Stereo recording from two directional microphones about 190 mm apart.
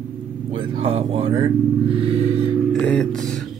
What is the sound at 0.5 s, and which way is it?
Speech, 30° right (ahead or behind).